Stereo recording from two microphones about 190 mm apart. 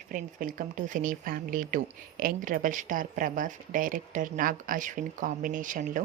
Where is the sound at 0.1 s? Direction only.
45° right (ahead or behind).